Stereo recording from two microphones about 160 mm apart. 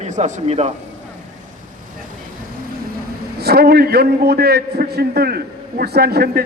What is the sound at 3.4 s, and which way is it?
A man's voice, 80° right.